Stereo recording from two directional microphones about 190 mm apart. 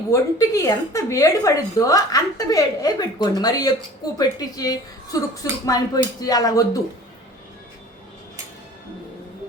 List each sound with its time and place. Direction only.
0.1 s a woman's voice: 15° left (ahead or behind)